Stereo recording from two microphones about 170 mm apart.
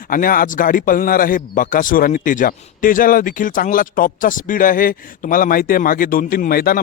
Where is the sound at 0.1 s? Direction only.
55° left (ahead or behind).